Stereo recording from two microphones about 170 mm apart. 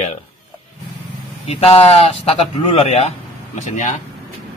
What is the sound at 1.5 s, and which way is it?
Speech, 35° left (ahead or behind).